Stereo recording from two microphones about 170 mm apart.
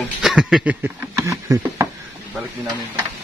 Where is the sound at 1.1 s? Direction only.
20° right (ahead or behind).